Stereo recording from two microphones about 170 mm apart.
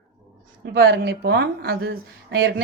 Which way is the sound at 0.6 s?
75° right (ahead or behind).